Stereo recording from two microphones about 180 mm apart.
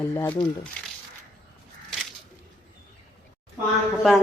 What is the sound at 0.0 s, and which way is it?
Speech, 10° left (ahead or behind).